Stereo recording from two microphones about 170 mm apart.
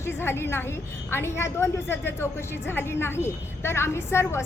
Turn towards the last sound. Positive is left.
turn(degrees=15)  # may be behind; listen again after turning